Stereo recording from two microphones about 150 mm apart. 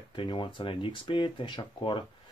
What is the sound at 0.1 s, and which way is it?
Speech, 30° left (ahead or behind).